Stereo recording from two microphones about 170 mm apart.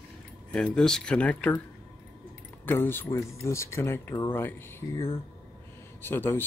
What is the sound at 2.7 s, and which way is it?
Speech, 10° left (ahead or behind).